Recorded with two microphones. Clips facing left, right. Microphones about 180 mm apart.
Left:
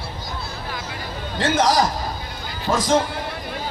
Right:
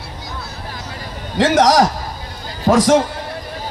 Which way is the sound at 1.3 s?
85° right.